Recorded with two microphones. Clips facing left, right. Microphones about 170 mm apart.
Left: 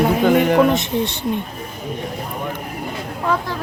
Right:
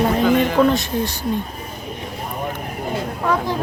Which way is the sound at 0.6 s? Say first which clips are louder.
Left 1 dB; 20° left (ahead or behind).